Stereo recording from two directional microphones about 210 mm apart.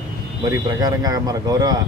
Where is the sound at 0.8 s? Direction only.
20° right (ahead or behind).